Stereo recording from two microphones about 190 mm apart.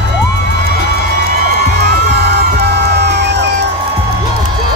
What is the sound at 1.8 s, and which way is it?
Music, 60° right (ahead or behind).